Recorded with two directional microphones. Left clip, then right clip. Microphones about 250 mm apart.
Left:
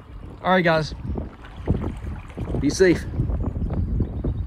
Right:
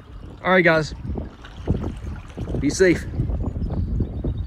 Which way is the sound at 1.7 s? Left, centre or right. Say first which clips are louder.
Even; left.